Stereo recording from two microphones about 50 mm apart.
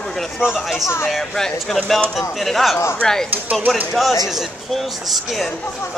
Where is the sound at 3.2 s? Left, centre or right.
Right.